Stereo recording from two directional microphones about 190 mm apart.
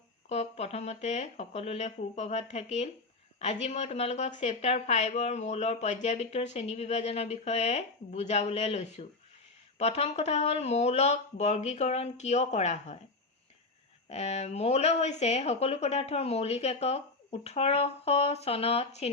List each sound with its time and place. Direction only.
0.3 s a woman's voice: 35° left (ahead or behind)
14.1 s a woman's voice: 35° left (ahead or behind)